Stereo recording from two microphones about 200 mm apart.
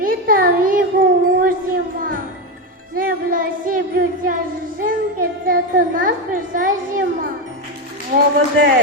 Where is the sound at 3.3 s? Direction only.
45° right (ahead or behind).